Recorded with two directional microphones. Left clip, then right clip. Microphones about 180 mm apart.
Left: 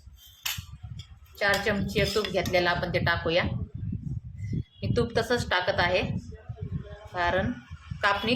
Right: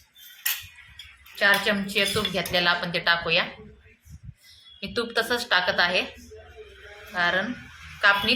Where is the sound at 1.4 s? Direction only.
45° left (ahead or behind).